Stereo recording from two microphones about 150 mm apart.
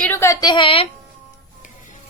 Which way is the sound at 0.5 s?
35° left (ahead or behind).